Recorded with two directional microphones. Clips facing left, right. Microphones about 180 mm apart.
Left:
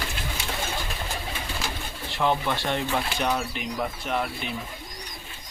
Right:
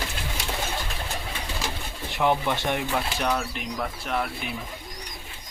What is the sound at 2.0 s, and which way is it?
Speech, 15° right (ahead or behind).